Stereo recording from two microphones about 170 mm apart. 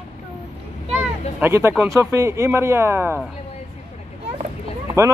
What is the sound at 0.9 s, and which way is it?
Speech, 15° right (ahead or behind).